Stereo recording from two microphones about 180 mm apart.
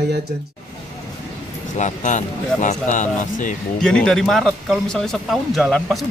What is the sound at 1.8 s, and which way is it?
Speech, 40° left (ahead or behind).